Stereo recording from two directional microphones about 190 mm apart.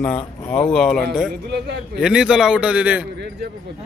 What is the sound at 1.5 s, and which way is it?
Speech, 60° right (ahead or behind).